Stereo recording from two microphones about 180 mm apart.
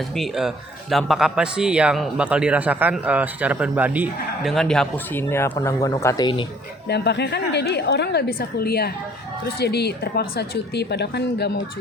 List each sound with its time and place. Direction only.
0.2 s a man's voice: centre (ahead or behind)
4.5 s a man's voice: 5° left (ahead or behind)
5.3 s speech: 15° left (ahead or behind)
6.8 s a woman's voice: 65° left (ahead or behind)